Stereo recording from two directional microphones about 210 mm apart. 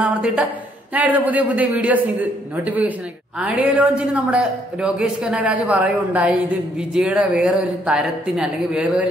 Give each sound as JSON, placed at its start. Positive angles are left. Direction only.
{"t": 0.0, "sound": "a man's voice", "side_deg": -5}